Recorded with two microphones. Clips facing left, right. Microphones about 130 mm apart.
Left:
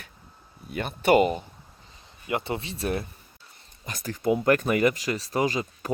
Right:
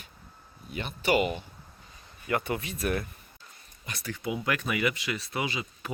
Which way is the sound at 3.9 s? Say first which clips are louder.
Left 8 dB; 40° left (ahead or behind).